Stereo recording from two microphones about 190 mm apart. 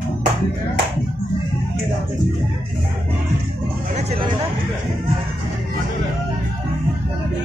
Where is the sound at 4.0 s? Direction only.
35° right (ahead or behind).